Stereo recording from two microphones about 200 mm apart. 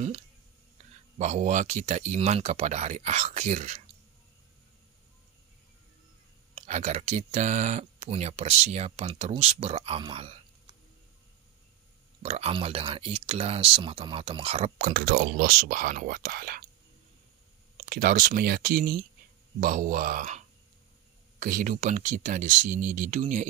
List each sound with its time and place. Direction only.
1.1 s speech: 35° right (ahead or behind)
6.5 s speech: 35° right (ahead or behind)
12.2 s speech: 30° right (ahead or behind)
15.0 s speech: 50° right (ahead or behind)
17.7 s speech: 45° right (ahead or behind)